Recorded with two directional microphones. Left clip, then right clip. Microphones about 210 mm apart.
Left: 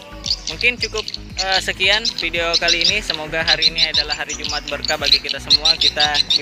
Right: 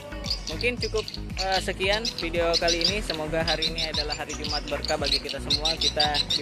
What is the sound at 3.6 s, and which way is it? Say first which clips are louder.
Speech: left 11 dB; 35° right (ahead or behind).